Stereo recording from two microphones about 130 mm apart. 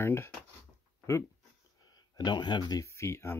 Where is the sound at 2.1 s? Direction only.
35° left (ahead or behind).